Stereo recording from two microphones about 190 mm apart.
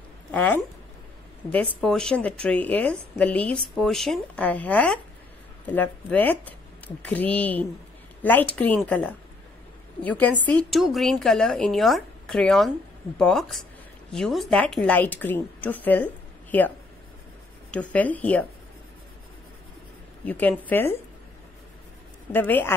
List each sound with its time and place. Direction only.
0.3 s a woman's voice: 10° left (ahead or behind)
20.2 s a woman's voice: 10° left (ahead or behind)
22.3 s a woman's voice: 10° left (ahead or behind)